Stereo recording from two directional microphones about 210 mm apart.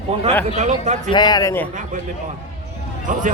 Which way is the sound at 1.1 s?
20° left (ahead or behind).